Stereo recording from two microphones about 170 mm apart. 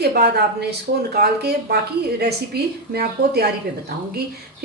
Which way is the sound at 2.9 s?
65° right (ahead or behind).